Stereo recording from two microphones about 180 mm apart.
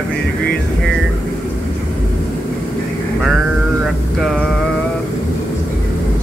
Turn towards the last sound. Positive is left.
turn(degrees=0)  # may be behind; listen again after turning